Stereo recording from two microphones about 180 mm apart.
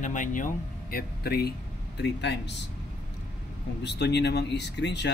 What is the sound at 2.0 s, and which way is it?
Speech, 70° left (ahead or behind).